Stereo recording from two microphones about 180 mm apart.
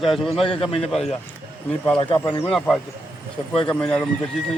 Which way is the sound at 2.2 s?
5° left (ahead or behind).